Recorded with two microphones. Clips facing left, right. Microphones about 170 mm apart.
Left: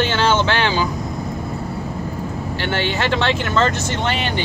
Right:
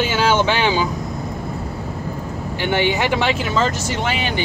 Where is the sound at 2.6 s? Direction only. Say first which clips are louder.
Right 3 dB; 15° right (ahead or behind).